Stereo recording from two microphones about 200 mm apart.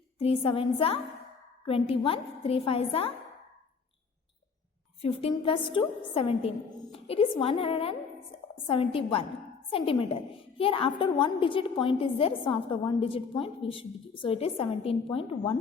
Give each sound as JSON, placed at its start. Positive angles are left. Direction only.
{"t": 0.2, "sound": "a woman's voice", "side_deg": 30}
{"t": 5.0, "sound": "a woman's voice", "side_deg": 25}